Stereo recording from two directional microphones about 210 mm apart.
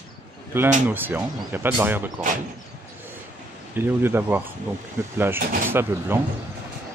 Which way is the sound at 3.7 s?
10° right (ahead or behind).